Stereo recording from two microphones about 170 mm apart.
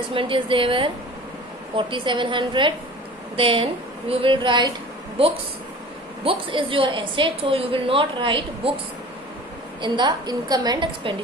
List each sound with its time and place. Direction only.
0.1 s a woman's voice: 30° right (ahead or behind)
9.8 s a woman's voice: 25° right (ahead or behind)